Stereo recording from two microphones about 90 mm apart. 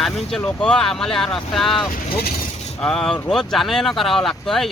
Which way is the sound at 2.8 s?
10° left (ahead or behind).